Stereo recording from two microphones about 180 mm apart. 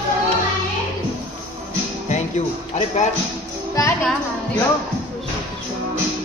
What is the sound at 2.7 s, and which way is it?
Speech, 40° left (ahead or behind).